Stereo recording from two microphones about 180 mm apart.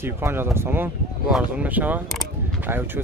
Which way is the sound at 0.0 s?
15° right (ahead or behind).